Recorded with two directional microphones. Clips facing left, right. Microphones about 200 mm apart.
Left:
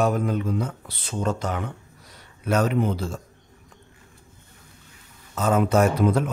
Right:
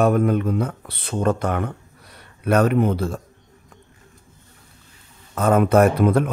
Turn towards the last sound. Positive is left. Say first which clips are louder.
# right 4 dB
turn(degrees=-60)  # may be behind; listen again after turning